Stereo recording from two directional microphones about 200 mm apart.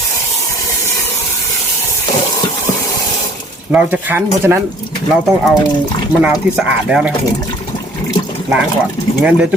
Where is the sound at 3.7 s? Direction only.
5° right (ahead or behind).